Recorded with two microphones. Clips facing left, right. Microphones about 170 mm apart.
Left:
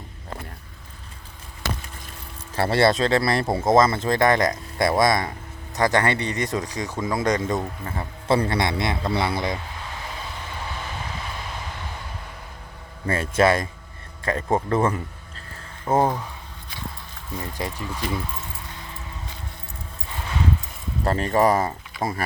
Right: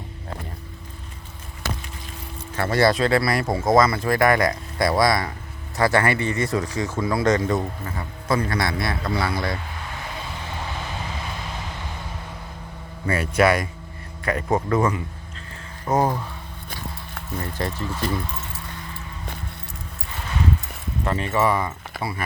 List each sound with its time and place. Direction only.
2.6 s speech: 30° left (ahead or behind)
7.9 s speech: 30° left (ahead or behind)
13.1 s speech: 25° left (ahead or behind)
17.3 s speech: 10° left (ahead or behind)
21.0 s speech: 40° left (ahead or behind)